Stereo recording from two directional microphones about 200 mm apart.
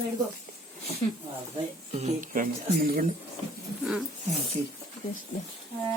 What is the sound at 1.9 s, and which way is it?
Speech, 35° right (ahead or behind).